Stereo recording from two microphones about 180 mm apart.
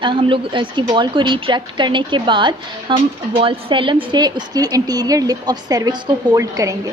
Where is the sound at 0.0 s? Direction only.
30° right (ahead or behind).